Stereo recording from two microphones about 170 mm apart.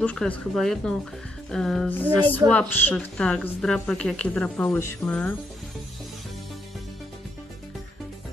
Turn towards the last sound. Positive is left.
turn(degrees=0)  # may be behind; listen again after turning